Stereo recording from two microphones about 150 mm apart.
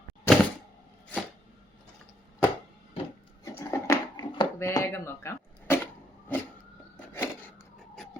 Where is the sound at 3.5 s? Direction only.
20° left (ahead or behind).